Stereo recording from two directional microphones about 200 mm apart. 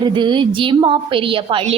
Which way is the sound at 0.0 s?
25° right (ahead or behind).